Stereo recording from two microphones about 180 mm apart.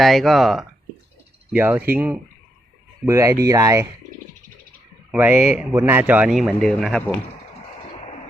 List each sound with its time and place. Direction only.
0.0 s a man's voice: centre (ahead or behind); by 3.8 s 15° right (ahead or behind)
5.1 s a man's voice: 10° right (ahead or behind)